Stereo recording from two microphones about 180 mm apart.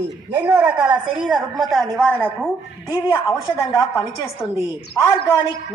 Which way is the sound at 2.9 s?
10° right (ahead or behind).